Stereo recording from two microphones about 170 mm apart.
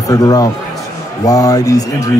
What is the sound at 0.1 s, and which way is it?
A man's voice, 20° left (ahead or behind).